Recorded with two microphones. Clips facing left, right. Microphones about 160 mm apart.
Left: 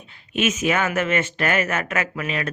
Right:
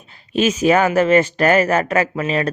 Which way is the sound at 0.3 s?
35° right (ahead or behind).